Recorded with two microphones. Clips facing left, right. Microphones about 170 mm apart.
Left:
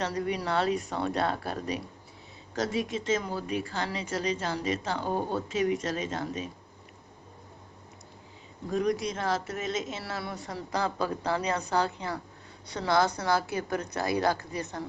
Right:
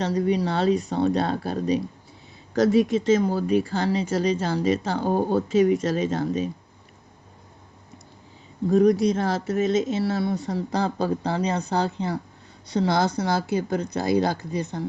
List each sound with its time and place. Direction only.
0.0 s speech: 25° right (ahead or behind)
2.6 s speech: 35° right (ahead or behind)
8.7 s speech: 35° right (ahead or behind)